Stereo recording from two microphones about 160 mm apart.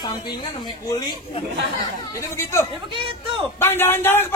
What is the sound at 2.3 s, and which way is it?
A man's voice, 15° left (ahead or behind).